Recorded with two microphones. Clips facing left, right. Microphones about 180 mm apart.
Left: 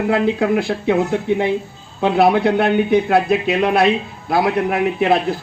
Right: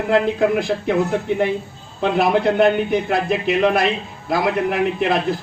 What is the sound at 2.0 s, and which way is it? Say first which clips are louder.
A man's voice: left 3 dB; 70° left (ahead or behind).